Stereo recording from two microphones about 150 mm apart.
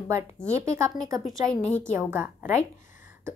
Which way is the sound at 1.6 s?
10° left (ahead or behind).